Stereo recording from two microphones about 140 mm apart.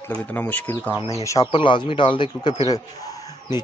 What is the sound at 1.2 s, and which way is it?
Speech, 25° left (ahead or behind).